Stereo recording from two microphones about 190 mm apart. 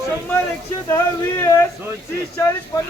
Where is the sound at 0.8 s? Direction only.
15° left (ahead or behind).